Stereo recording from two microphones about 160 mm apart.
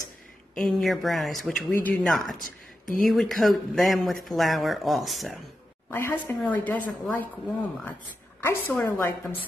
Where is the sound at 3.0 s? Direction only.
Centre (ahead or behind).